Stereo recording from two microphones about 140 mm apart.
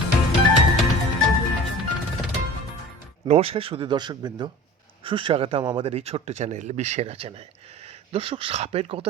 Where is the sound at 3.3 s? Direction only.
45° right (ahead or behind).